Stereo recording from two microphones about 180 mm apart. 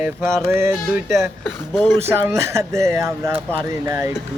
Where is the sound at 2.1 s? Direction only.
15° right (ahead or behind).